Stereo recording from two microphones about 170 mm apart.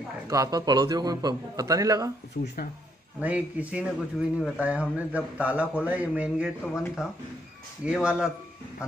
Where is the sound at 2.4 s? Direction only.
60° left (ahead or behind).